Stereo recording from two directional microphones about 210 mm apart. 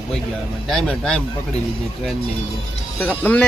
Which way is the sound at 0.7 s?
Centre (ahead or behind).